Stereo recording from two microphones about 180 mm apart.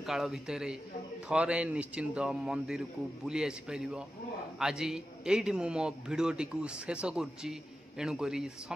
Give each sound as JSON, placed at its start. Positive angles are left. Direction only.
{"t": 0.0, "sound": "a man's voice", "side_deg": 0}